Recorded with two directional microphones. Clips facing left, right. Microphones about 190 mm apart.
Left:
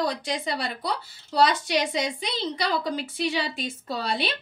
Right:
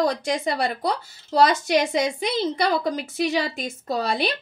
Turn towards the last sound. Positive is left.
turn(degrees=-45)  # may be behind; listen again after turning